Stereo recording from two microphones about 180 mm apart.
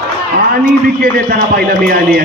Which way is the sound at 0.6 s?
55° right (ahead or behind).